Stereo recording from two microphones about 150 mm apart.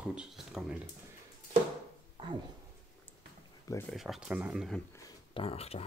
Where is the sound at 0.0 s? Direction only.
5° right (ahead or behind).